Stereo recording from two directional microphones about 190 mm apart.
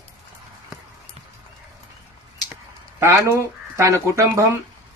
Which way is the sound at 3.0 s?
15° right (ahead or behind).